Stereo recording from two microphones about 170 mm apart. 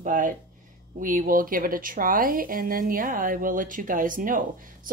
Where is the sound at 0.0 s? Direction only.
50° right (ahead or behind).